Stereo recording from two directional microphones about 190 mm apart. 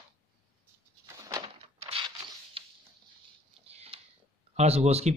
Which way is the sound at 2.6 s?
30° right (ahead or behind).